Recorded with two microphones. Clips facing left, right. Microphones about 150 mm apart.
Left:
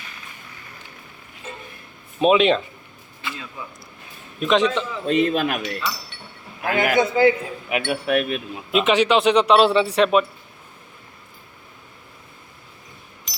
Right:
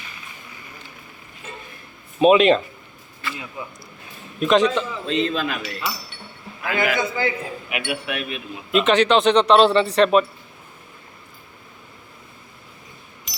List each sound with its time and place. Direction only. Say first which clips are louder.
2.1 s speech: right 2 dB; centre (ahead or behind)
3.6 s speech: right 2 dB; 15° right (ahead or behind)
4.4 s a man's voice: right 2 dB; centre (ahead or behind)
5.0 s speech: left 6 dB; 55° left (ahead or behind)
7.7 s speech: left 7 dB; 40° left (ahead or behind)
8.7 s a man's voice: right 1 dB; 5° left (ahead or behind)